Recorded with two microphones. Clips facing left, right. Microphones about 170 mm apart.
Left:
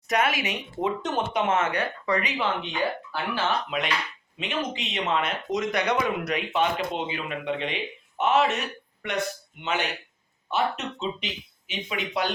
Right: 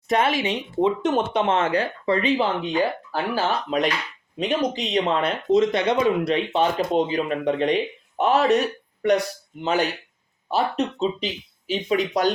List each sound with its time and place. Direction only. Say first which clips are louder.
0.1 s speech: right 4 dB; 30° right (ahead or behind)